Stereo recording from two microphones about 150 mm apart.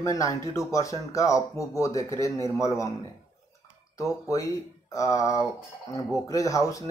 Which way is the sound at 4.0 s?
20° left (ahead or behind).